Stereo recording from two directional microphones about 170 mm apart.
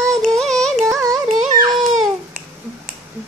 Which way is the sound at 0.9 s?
20° right (ahead or behind).